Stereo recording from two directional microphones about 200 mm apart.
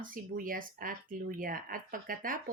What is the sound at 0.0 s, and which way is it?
A woman's voice, 45° right (ahead or behind).